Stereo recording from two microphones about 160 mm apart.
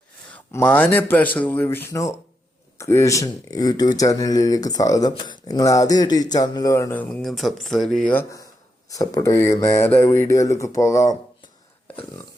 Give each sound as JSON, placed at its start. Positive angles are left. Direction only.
{"t": 0.3, "sound": "a man's voice", "side_deg": 10}
{"t": 8.1, "sound": "a man's voice", "side_deg": 15}